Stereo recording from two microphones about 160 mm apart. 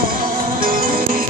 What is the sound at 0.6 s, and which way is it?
Music, 60° right (ahead or behind).